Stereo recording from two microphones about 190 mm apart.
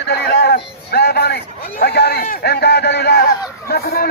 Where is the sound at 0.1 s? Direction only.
60° left (ahead or behind).